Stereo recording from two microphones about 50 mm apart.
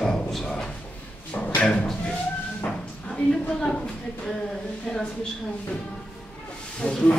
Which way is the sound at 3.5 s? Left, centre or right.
Centre.